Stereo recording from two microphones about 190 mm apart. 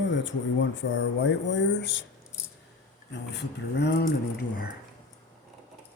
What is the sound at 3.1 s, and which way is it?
Speech, 65° left (ahead or behind).